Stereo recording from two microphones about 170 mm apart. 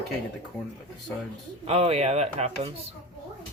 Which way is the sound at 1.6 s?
35° right (ahead or behind).